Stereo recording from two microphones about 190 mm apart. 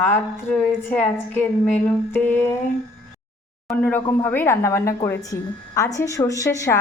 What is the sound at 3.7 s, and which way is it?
A woman's voice, 10° left (ahead or behind).